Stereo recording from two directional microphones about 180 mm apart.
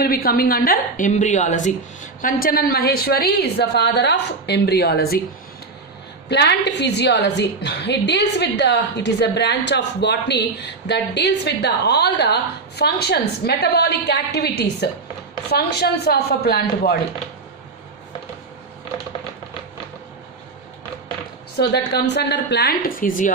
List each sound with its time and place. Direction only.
0.0 s a woman's voice: 55° left (ahead or behind)
2.2 s a woman's voice: 55° left (ahead or behind)
6.2 s a woman's voice: 70° left (ahead or behind)
21.5 s a woman's voice: 65° left (ahead or behind)